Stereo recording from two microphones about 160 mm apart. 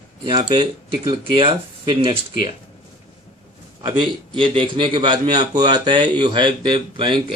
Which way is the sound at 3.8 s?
30° right (ahead or behind).